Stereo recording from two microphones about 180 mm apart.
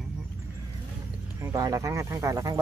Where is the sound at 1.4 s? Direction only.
20° right (ahead or behind).